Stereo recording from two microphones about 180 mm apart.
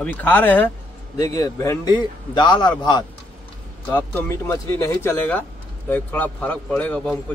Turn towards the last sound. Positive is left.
turn(degrees=5)  # may be behind; listen again after turning